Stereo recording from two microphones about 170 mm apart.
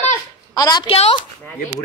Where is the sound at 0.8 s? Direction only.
35° left (ahead or behind).